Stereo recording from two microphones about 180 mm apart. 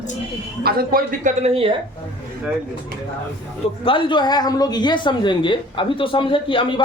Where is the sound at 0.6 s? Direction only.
55° right (ahead or behind).